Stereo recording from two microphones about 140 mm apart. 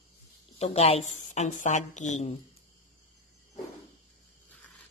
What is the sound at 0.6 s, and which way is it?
A woman's voice, 45° left (ahead or behind).